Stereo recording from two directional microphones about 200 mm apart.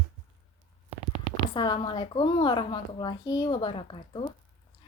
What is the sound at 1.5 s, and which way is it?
A woman's voice, 25° left (ahead or behind).